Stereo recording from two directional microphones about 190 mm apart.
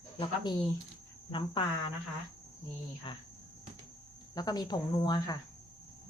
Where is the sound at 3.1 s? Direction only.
25° left (ahead or behind).